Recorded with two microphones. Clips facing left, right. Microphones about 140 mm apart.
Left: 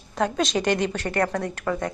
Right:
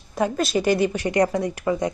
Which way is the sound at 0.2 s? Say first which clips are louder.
Right 2 dB; 5° right (ahead or behind).